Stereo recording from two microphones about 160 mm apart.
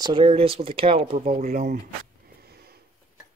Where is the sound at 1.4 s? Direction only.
50° right (ahead or behind).